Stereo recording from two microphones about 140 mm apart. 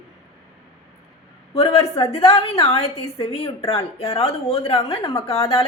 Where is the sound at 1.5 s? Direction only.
45° left (ahead or behind).